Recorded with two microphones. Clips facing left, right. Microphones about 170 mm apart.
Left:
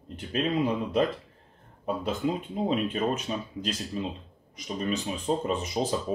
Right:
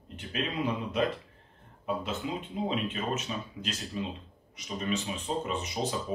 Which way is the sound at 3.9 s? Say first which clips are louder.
Left 2 dB; 35° left (ahead or behind).